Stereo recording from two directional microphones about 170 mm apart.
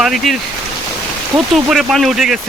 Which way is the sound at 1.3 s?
Centre (ahead or behind).